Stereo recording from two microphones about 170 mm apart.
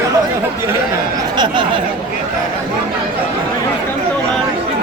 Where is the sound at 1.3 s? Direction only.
25° right (ahead or behind).